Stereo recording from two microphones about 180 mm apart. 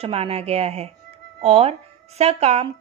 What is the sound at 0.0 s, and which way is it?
A woman's voice, 35° right (ahead or behind).